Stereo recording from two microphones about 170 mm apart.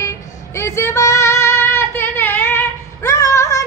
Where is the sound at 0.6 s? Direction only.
15° left (ahead or behind).